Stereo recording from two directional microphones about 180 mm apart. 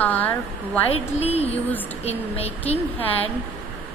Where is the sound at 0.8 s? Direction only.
35° left (ahead or behind).